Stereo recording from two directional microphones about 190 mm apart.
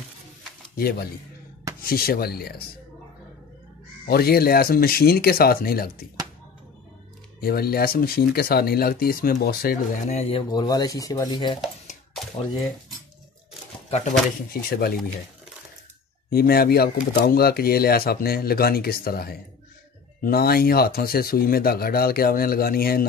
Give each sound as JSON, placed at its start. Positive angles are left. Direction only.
{"t": 0.7, "sound": "speech", "side_deg": 55}
{"t": 4.0, "sound": "speech", "side_deg": 55}
{"t": 7.3, "sound": "speech", "side_deg": 55}
{"t": 10.5, "sound": "speech", "side_deg": 20}
{"t": 13.8, "sound": "speech", "side_deg": 35}
{"t": 14.5, "sound": "speech", "side_deg": 55}
{"t": 16.3, "sound": "speech", "side_deg": 55}